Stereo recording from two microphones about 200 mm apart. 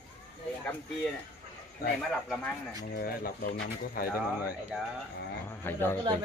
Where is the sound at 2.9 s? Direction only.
45° left (ahead or behind).